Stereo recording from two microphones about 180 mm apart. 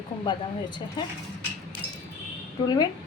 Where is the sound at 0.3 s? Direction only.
25° left (ahead or behind).